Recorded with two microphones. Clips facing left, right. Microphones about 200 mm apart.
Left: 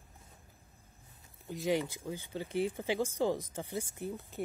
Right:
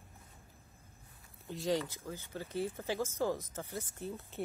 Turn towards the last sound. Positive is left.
turn(degrees=0)  # may be behind; listen again after turning